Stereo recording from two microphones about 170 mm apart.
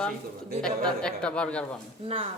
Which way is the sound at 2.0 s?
35° right (ahead or behind).